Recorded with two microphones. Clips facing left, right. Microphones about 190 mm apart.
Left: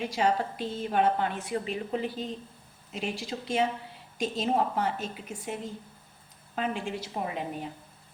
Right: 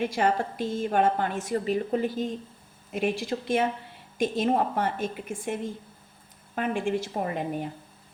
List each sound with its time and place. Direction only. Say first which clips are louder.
0.0 s a woman's voice: right 2 dB; 55° right (ahead or behind)
6.6 s a woman's voice: right 5 dB; 50° right (ahead or behind)